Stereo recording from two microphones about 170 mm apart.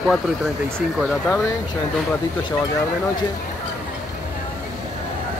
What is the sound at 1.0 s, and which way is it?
Speech, 5° right (ahead or behind).